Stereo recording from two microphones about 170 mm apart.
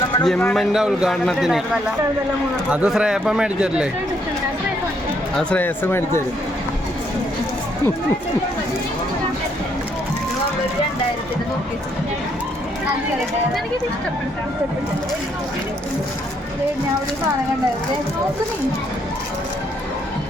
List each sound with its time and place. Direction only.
0.3 s a man's voice: 5° left (ahead or behind)
2.6 s a man's voice: 5° right (ahead or behind)
5.4 s speech: 10° left (ahead or behind)